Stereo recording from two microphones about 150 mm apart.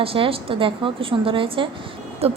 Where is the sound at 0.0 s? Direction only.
40° right (ahead or behind).